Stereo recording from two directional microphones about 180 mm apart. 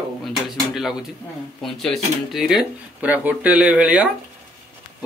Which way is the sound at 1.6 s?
Centre (ahead or behind).